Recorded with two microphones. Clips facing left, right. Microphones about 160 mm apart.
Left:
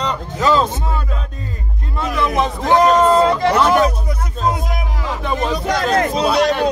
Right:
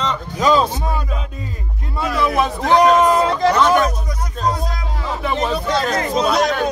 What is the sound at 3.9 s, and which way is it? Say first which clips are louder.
Music: left 2 dB; 25° left (ahead or behind).